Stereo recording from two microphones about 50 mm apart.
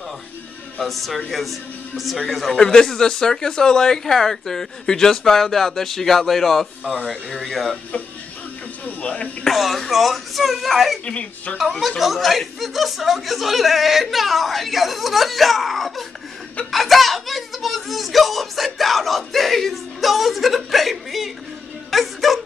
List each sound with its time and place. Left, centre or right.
0.7 s speech: centre
2.5 s speech: centre
9.0 s speech: left
9.5 s speech: centre
11.1 s speech: left
12.0 s a child's voice: centre